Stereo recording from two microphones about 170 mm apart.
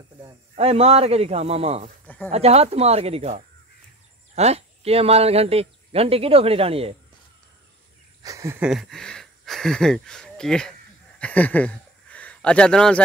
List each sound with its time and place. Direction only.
0.6 s speech: 40° right (ahead or behind)
2.0 s a sound: 10° left (ahead or behind)
2.3 s speech: 40° right (ahead or behind)
8.2 s speech: 20° right (ahead or behind)
8.6 s speech: centre (ahead or behind)